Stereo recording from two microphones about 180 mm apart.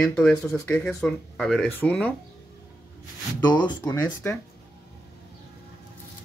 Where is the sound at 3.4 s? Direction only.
25° left (ahead or behind).